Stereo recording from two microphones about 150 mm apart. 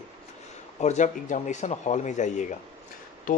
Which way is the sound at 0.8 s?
55° left (ahead or behind).